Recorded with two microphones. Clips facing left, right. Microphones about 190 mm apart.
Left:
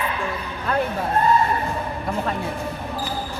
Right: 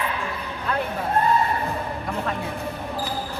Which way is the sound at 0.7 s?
45° left (ahead or behind).